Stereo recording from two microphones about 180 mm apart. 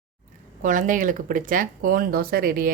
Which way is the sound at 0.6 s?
45° right (ahead or behind).